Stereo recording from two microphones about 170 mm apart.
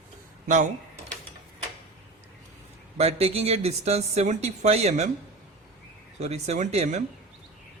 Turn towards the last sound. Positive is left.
turn(degrees=-40)  # may be behind; listen again after turning